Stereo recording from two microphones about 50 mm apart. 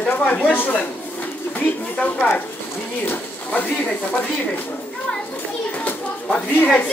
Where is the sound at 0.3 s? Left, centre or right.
Left.